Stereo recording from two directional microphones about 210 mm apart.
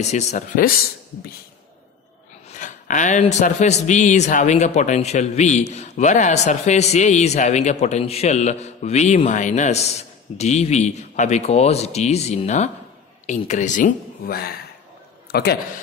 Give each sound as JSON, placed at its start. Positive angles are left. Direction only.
{"t": 0.0, "sound": "a man's voice", "side_deg": 35}
{"t": 2.5, "sound": "a man's voice", "side_deg": 35}